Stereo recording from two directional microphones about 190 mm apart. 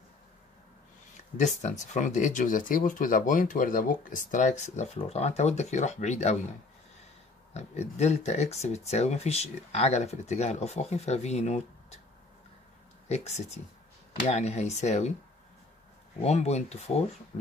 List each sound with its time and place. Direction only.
1.3 s speech: 40° left (ahead or behind)
7.5 s speech: 35° left (ahead or behind)
13.1 s speech: 35° left (ahead or behind)
16.2 s speech: 35° left (ahead or behind)